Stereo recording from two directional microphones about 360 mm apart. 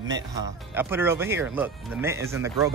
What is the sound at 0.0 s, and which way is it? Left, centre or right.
Speech, centre.